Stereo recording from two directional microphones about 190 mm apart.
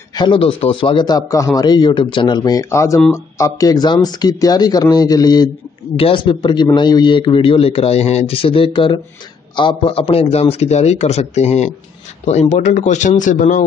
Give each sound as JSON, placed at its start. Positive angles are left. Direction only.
{"t": 0.1, "sound": "a man's voice", "side_deg": 25}